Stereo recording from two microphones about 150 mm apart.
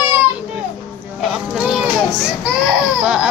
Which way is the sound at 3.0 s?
5° right (ahead or behind).